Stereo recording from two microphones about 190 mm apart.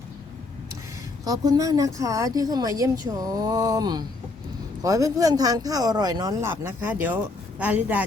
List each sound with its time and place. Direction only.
1.2 s speech: 20° right (ahead or behind)